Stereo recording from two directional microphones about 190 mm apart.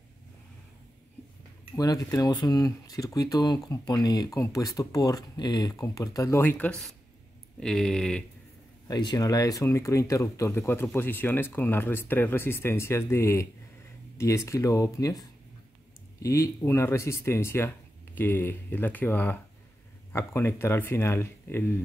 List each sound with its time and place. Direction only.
1.8 s speech: 20° left (ahead or behind); by 8.2 s centre (ahead or behind)
8.8 s speech: 20° left (ahead or behind)